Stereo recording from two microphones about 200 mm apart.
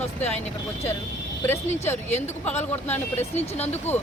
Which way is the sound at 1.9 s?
35° left (ahead or behind).